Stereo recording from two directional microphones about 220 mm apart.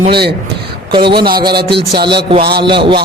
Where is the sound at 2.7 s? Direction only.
20° right (ahead or behind).